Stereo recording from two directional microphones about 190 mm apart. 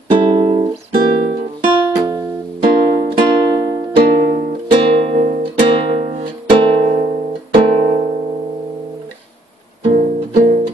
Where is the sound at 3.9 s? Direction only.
30° right (ahead or behind).